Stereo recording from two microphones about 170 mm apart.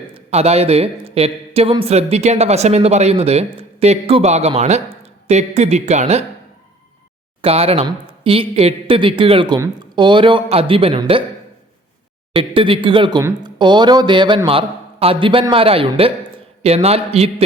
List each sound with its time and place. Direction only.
0.1 s a man's voice: 40° right (ahead or behind)
7.4 s a man's voice: 35° right (ahead or behind)
12.3 s a man's voice: 30° right (ahead or behind)